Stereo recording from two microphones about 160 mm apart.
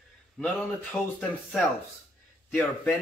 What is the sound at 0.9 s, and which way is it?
Speech, 5° left (ahead or behind).